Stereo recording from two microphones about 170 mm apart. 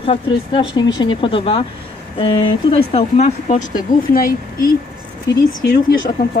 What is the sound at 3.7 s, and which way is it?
Speech, 55° left (ahead or behind).